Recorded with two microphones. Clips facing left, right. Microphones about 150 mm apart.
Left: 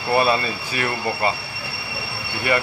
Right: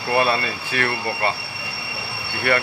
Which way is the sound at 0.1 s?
15° left (ahead or behind).